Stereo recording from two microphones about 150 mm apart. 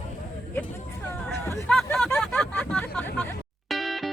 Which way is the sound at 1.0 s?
15° left (ahead or behind).